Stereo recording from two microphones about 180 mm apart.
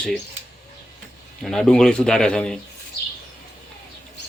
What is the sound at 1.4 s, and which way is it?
Speech, centre (ahead or behind).